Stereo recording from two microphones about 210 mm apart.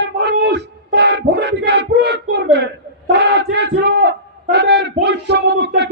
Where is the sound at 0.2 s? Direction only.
55° right (ahead or behind).